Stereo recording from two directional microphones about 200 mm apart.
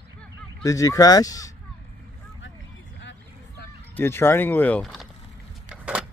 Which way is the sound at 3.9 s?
10° left (ahead or behind).